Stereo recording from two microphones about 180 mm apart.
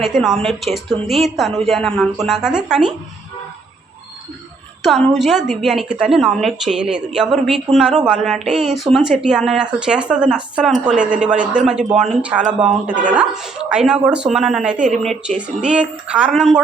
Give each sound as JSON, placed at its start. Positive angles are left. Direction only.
{"t": 0.0, "sound": "a woman's voice", "side_deg": 0}
{"t": 4.8, "sound": "a woman's voice", "side_deg": 0}